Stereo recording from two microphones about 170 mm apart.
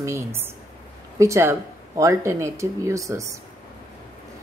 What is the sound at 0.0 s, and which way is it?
A woman's voice, 15° right (ahead or behind).